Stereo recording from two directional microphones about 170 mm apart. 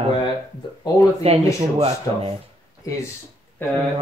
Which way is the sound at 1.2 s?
35° right (ahead or behind).